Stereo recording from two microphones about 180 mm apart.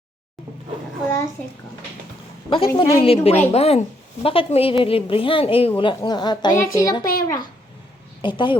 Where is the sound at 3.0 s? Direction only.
35° left (ahead or behind).